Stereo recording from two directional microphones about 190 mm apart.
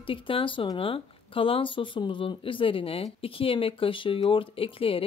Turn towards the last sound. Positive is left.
turn(degrees=30)  # may be behind; listen again after turning